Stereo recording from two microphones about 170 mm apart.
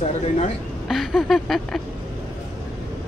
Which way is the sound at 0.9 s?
Centre (ahead or behind).